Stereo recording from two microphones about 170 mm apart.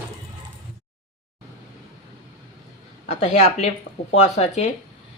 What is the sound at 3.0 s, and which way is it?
A woman's voice, 40° left (ahead or behind).